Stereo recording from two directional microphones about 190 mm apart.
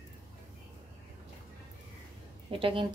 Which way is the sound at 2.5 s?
25° right (ahead or behind).